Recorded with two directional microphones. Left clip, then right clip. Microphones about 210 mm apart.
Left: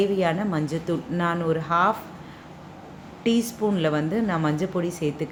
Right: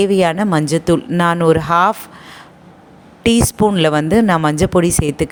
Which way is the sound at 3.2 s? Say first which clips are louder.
Right 10 dB; 50° right (ahead or behind).